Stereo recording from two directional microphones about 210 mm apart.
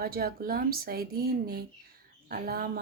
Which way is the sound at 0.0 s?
45° right (ahead or behind).